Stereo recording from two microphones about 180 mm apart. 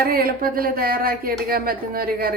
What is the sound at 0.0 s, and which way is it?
Speech, 55° right (ahead or behind).